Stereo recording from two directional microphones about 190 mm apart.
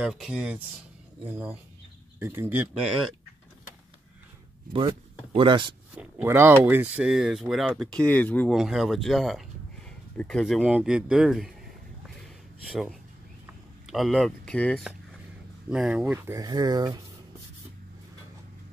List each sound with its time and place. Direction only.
0.0 s speech: 5° right (ahead or behind)
5.3 s speech: 25° right (ahead or behind)
5.9 s speech: 10° right (ahead or behind)
12.6 s speech: centre (ahead or behind); by 17.0 s 20° right (ahead or behind)